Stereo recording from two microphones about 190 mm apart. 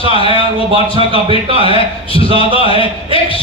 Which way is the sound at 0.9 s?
25° right (ahead or behind).